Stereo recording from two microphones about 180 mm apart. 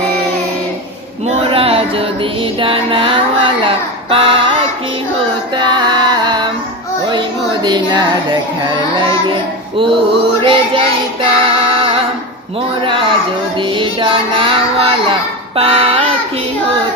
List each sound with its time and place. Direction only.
1.4 s music: 30° right (ahead or behind)
2.6 s speech: 30° right (ahead or behind)
5.5 s music: 25° right (ahead or behind)
7.1 s speech: 25° right (ahead or behind)
10.4 s child singing: 30° right (ahead or behind)
12.8 s speech: 30° right (ahead or behind)